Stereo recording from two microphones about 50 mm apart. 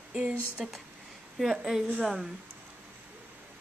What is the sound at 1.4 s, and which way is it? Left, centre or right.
Speech, centre.